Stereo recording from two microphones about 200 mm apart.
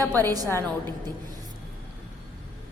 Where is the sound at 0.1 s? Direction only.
10° left (ahead or behind).